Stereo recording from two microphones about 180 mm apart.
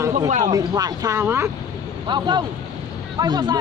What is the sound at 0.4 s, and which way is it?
Speech, 20° right (ahead or behind).